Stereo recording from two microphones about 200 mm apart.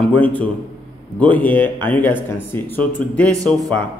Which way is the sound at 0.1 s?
10° left (ahead or behind).